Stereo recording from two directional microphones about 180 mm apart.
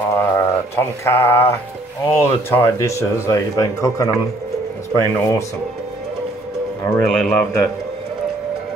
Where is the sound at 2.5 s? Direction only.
15° left (ahead or behind).